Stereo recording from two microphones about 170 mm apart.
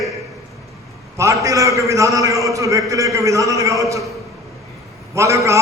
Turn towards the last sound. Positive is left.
turn(degrees=-15)  # may be behind; listen again after turning